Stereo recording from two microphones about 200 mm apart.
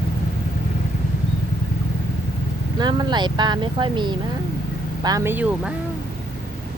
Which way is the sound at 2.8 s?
20° right (ahead or behind).